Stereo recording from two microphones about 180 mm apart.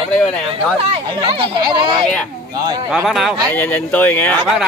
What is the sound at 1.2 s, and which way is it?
Speech, 30° right (ahead or behind).